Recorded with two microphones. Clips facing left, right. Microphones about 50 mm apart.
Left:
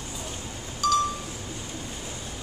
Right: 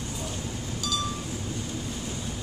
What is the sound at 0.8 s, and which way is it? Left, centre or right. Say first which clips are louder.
Wind chime: left 10 dB; left.